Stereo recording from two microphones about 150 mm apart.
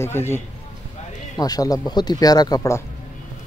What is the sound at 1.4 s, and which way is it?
Speech, 25° left (ahead or behind).